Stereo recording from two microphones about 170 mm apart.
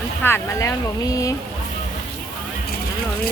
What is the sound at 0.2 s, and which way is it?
Speech, 10° left (ahead or behind).